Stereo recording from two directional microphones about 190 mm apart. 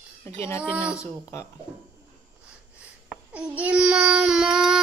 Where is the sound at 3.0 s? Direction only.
5° right (ahead or behind).